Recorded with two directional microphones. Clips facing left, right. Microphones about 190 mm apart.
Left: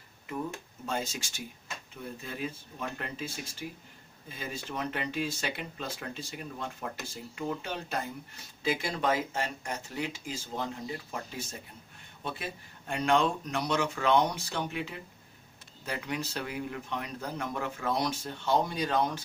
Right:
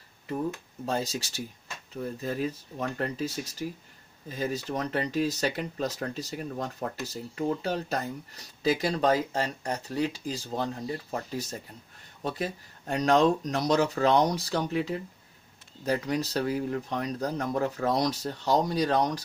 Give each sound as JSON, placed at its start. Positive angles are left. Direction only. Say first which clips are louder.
{"t": 0.8, "sound": "speech", "louder": "right 4 dB", "side_deg": -35}